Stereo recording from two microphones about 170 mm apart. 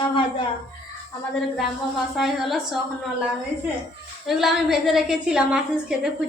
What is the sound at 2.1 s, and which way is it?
Speech, centre (ahead or behind).